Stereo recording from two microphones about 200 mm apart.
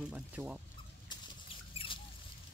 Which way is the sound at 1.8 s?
25° left (ahead or behind).